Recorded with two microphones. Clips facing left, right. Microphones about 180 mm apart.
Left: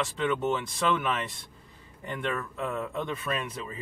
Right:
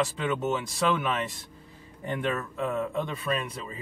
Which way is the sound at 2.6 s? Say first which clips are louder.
Right 4 dB; 5° right (ahead or behind).